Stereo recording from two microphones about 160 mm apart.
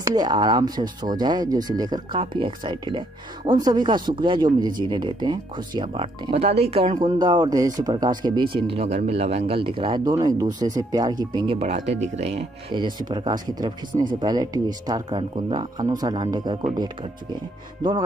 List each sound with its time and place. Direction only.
0.0 s speech: 25° right (ahead or behind)
6.3 s speech: 40° right (ahead or behind)
7.1 s speech: 25° right (ahead or behind)